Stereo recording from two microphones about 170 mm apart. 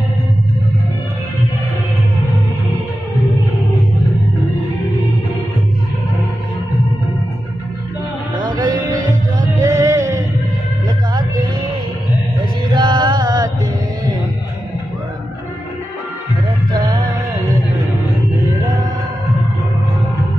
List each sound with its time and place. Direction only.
8.5 s music: 25° right (ahead or behind)
9.6 s a sound: 20° right (ahead or behind)
12.6 s mantra: 25° right (ahead or behind)
16.7 s music: 25° right (ahead or behind)